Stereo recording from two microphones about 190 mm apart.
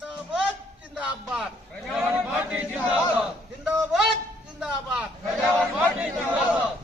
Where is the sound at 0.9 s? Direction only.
5° right (ahead or behind).